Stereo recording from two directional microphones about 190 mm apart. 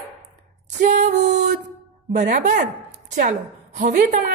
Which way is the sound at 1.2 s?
60° right (ahead or behind).